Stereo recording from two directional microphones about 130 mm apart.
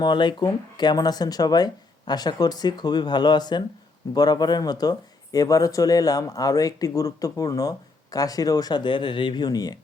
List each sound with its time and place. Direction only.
0.0 s speech: 35° left (ahead or behind)